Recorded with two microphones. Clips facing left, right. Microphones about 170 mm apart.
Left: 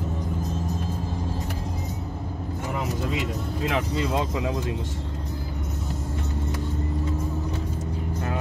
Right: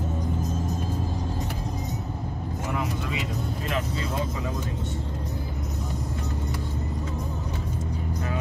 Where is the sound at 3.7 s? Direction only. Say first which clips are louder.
Left 4 dB; 90° left.